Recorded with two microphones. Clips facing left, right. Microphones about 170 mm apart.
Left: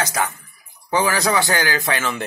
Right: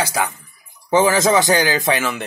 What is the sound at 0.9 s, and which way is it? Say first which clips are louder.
Speech: right 5 dB; 20° right (ahead or behind).